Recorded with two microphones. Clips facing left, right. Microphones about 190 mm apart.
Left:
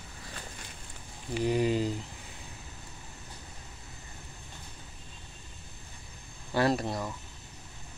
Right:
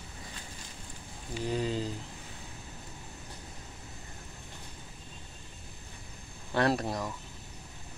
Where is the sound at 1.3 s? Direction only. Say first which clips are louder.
Left 5 dB; 15° left (ahead or behind).